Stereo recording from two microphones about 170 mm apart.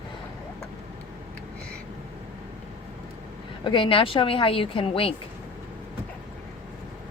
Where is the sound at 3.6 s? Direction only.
30° left (ahead or behind).